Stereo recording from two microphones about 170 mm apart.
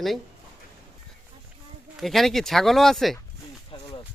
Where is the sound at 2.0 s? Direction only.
Centre (ahead or behind).